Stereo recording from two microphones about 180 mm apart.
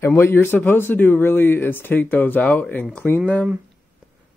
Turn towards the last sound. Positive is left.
turn(degrees=5)  # may be behind; listen again after turning